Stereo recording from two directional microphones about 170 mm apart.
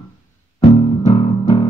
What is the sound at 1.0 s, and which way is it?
Music, 30° left (ahead or behind).